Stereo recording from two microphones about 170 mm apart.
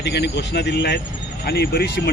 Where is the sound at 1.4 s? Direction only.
75° left (ahead or behind).